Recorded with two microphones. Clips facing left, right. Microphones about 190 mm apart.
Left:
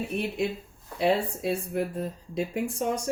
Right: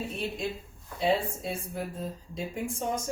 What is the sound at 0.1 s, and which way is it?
Speech, 65° left (ahead or behind).